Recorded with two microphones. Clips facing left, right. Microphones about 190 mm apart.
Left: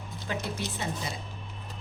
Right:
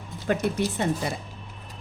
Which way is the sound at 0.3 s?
55° right (ahead or behind).